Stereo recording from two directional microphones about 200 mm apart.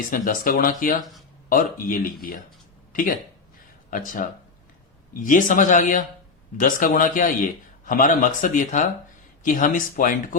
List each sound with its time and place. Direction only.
0.1 s a man's voice: 40° left (ahead or behind)